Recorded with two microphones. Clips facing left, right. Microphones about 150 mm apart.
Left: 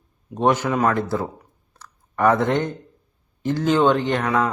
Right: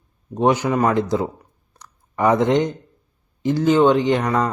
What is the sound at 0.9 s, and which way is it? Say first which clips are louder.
Speech: right 4 dB; 15° right (ahead or behind).